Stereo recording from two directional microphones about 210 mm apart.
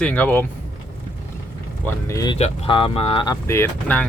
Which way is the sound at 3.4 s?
10° left (ahead or behind).